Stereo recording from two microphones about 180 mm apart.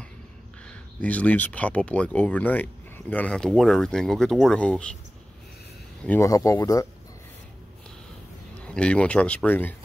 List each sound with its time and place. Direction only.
0.7 s speech: 10° left (ahead or behind)
6.0 s speech: 15° left (ahead or behind)
8.6 s speech: 5° left (ahead or behind)